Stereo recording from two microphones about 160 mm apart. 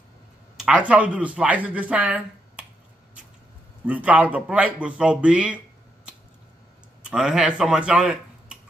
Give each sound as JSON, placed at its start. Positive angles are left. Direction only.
{"t": 0.6, "sound": "speech", "side_deg": -5}
{"t": 3.8, "sound": "speech", "side_deg": -10}
{"t": 7.1, "sound": "speech", "side_deg": -5}